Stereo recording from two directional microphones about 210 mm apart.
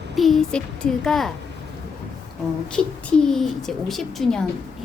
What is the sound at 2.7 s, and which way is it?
Speech, 5° left (ahead or behind).